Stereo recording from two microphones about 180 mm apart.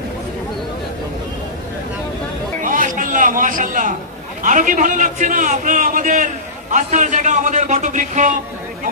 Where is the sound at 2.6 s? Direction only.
45° right (ahead or behind).